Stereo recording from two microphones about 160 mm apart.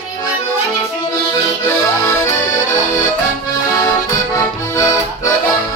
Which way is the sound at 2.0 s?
20° left (ahead or behind).